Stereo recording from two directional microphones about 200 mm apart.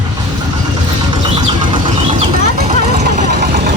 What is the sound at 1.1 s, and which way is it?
Vehicle, 20° right (ahead or behind).